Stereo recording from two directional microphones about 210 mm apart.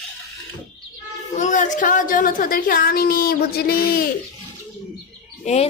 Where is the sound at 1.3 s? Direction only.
35° left (ahead or behind).